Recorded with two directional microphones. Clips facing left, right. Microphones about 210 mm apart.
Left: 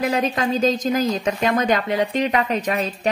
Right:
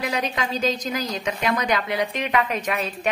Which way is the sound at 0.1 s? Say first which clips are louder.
Left 5 dB; 45° left (ahead or behind).